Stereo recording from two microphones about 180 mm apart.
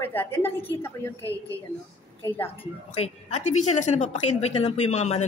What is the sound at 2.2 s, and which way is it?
Speech, 10° left (ahead or behind).